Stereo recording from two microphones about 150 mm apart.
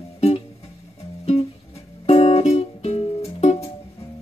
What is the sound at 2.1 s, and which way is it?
Music, 45° left (ahead or behind).